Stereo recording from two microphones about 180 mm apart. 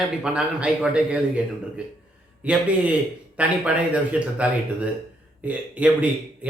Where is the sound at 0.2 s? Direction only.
5° right (ahead or behind).